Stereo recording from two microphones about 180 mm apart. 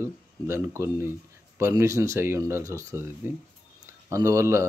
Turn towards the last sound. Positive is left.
turn(degrees=-15)  # may be behind; listen again after turning